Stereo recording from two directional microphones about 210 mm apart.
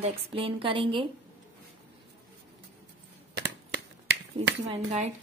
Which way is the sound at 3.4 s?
55° right (ahead or behind).